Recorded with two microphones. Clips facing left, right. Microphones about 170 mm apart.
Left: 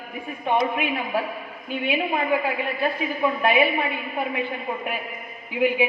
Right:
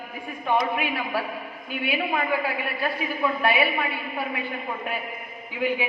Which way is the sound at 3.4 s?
25° left (ahead or behind).